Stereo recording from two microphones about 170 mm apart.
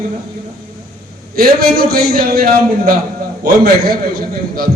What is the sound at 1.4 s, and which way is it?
A man's voice, 60° right (ahead or behind).